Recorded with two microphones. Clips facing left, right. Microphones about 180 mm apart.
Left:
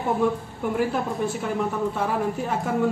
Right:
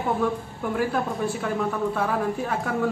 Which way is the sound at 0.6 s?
5° left (ahead or behind).